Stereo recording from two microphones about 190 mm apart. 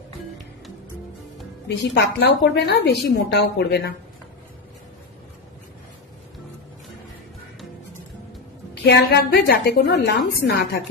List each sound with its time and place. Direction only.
1.6 s a woman's voice: 60° left (ahead or behind)
8.8 s a woman's voice: 60° left (ahead or behind)